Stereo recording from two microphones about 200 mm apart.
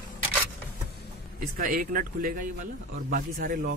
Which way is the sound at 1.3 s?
45° right (ahead or behind).